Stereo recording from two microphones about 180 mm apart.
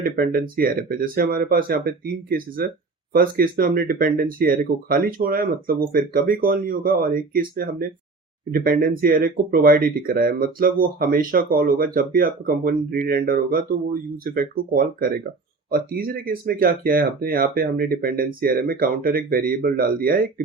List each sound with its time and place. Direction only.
0.0 s speech: 55° right (ahead or behind)
3.1 s speech: 50° right (ahead or behind)